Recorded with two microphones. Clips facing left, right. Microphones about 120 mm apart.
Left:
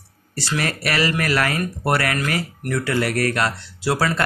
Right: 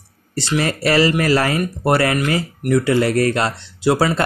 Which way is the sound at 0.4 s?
25° right (ahead or behind).